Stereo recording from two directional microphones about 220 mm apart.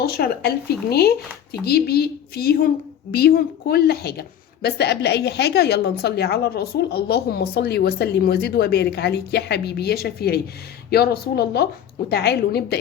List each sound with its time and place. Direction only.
0.0 s a woman's voice: 45° left (ahead or behind)